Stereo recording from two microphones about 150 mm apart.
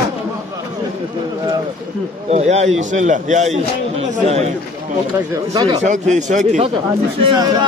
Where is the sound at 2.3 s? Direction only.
50° right (ahead or behind).